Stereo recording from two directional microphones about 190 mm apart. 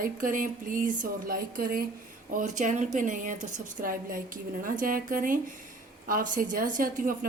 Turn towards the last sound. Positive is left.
turn(degrees=-45)  # may be behind; listen again after turning